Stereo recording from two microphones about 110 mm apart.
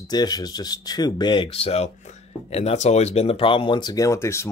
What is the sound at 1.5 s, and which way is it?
Speech, 70° left (ahead or behind).